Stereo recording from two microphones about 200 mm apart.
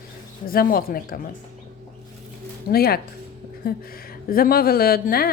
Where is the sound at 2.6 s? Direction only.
50° left (ahead or behind).